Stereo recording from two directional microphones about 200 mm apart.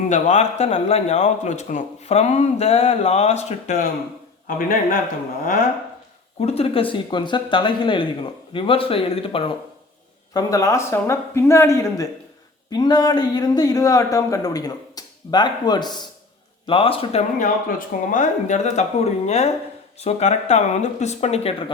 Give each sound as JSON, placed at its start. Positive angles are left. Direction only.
{"t": 0.1, "sound": "speech", "side_deg": 35}
{"t": 6.4, "sound": "a man's voice", "side_deg": 30}
{"t": 10.3, "sound": "a man's voice", "side_deg": 15}